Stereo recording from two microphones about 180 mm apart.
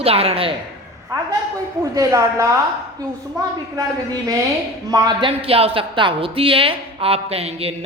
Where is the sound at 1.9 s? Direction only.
15° right (ahead or behind).